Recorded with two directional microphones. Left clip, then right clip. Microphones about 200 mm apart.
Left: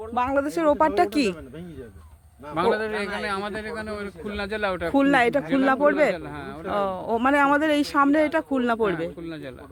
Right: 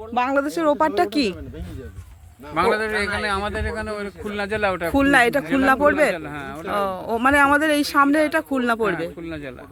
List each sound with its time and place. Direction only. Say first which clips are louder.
0.1 s speech: right 3 dB; 10° right (ahead or behind)
2.6 s a man's voice: right 4 dB; 20° right (ahead or behind)
4.9 s speech: right 3 dB; 5° left (ahead or behind)
6.1 s a man's voice: right 4 dB; 40° right (ahead or behind)
6.7 s speech: right 1 dB; 5° left (ahead or behind)